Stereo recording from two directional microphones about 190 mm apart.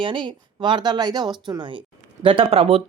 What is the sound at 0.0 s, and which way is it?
Speech, 25° right (ahead or behind).